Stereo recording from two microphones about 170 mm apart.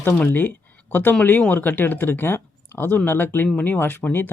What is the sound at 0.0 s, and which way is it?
Speech, 10° left (ahead or behind).